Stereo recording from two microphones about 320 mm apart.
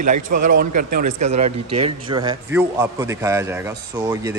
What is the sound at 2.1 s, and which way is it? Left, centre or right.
Speech, centre.